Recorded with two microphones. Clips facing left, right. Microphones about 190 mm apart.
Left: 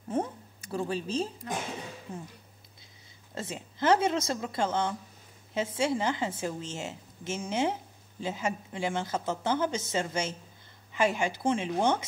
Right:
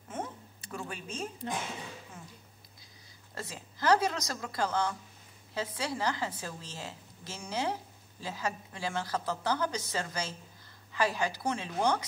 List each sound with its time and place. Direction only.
0.1 s a sound: 35° left (ahead or behind)
0.7 s speech: 30° left (ahead or behind)
3.3 s a woman's voice: 25° left (ahead or behind)